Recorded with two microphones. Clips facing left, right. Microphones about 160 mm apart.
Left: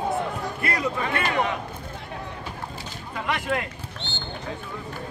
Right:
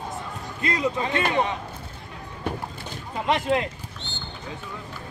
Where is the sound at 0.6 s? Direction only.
20° right (ahead or behind).